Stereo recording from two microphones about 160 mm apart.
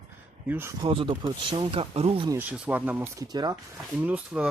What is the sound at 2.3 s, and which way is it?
Speech, 10° right (ahead or behind).